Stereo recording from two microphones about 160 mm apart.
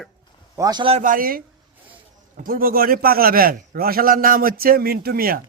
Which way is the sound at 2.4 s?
65° right (ahead or behind).